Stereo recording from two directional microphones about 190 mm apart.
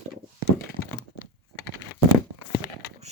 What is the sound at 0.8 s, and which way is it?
Crack, 90° left.